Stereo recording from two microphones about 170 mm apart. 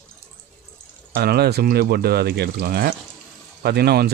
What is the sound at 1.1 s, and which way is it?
Speech, 70° right (ahead or behind).